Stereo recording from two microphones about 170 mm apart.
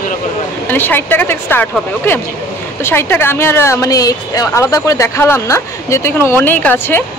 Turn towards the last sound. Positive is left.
turn(degrees=10)  # may be behind; listen again after turning